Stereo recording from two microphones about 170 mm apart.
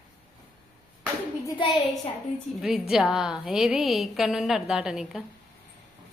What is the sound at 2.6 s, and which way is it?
A woman's voice, 5° right (ahead or behind).